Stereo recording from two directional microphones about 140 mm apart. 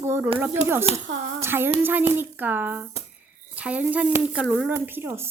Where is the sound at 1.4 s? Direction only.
15° right (ahead or behind).